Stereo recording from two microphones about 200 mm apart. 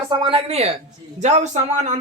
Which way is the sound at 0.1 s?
25° right (ahead or behind).